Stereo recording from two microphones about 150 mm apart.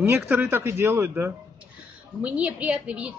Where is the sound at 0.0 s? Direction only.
15° right (ahead or behind).